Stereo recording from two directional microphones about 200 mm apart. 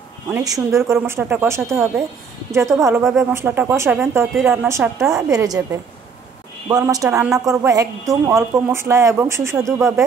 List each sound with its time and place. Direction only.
0.3 s speech: 15° right (ahead or behind)
3.0 s speech: centre (ahead or behind)
9.8 s speech: centre (ahead or behind)